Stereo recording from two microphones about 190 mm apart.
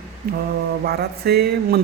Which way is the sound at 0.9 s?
55° right (ahead or behind).